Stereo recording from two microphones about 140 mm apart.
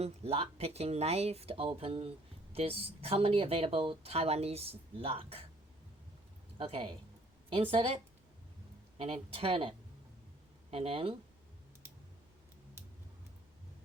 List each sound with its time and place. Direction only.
0.0 s speech: 45° right (ahead or behind)
6.6 s speech: 40° right (ahead or behind)